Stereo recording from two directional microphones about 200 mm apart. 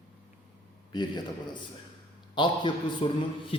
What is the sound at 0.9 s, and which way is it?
A man's voice, 20° left (ahead or behind).